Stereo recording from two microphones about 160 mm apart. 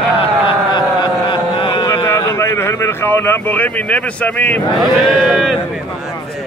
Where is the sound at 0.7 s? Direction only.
30° left (ahead or behind).